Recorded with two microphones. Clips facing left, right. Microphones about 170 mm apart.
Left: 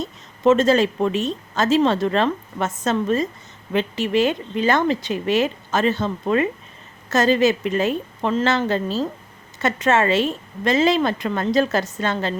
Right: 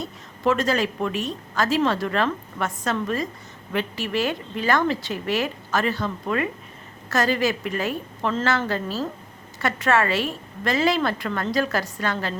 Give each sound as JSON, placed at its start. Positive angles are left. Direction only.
{"t": 0.0, "sound": "a woman's voice", "side_deg": 25}